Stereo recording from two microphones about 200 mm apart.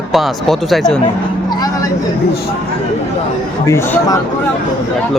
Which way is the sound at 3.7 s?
15° left (ahead or behind).